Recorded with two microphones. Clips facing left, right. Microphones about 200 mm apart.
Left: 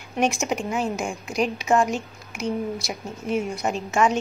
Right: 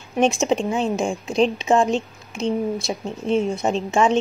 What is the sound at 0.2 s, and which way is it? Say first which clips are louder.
A woman's voice: right 5 dB; 25° right (ahead or behind).